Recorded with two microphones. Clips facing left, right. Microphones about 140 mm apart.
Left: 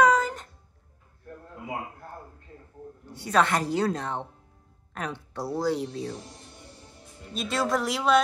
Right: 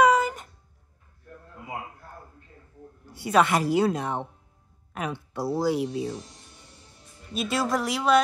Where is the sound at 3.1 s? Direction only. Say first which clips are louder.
Right 2 dB; 10° right (ahead or behind).